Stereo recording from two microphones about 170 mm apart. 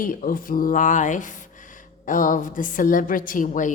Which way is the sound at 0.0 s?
50° left (ahead or behind).